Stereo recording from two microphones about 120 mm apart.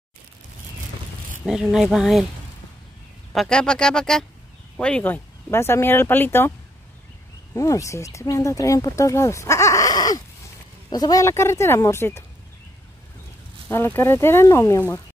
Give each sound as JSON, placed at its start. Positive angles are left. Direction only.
{"t": 1.4, "sound": "speech", "side_deg": -5}
{"t": 3.3, "sound": "speech", "side_deg": 5}
{"t": 7.5, "sound": "a woman's voice", "side_deg": 25}
{"t": 13.7, "sound": "a woman's voice", "side_deg": 20}